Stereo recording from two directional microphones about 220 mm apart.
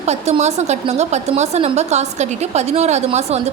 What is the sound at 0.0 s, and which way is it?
A woman's voice, 30° right (ahead or behind).